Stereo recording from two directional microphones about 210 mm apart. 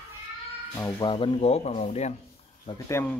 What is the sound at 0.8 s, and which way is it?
Speech, 20° left (ahead or behind).